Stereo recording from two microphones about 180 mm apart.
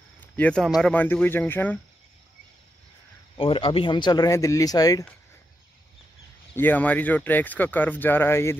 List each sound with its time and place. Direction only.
0.2 s a sound: 5° left (ahead or behind)
0.7 s speech: 5° left (ahead or behind)
3.3 s speech: 30° left (ahead or behind)
6.5 s speech: 10° left (ahead or behind)